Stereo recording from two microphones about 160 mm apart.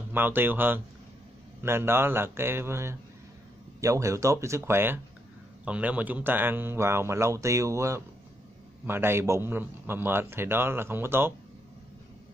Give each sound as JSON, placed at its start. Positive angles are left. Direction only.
{"t": 0.1, "sound": "a man's voice", "side_deg": -10}